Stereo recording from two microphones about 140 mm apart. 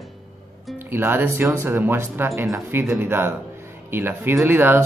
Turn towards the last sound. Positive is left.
turn(degrees=-15)  # may be behind; listen again after turning